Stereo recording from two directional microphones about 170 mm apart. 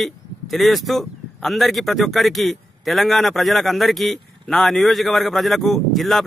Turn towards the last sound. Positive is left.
turn(degrees=0)  # may be behind; listen again after turning